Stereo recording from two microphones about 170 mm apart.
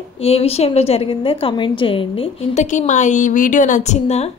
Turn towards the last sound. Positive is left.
turn(degrees=40)  # may be behind; listen again after turning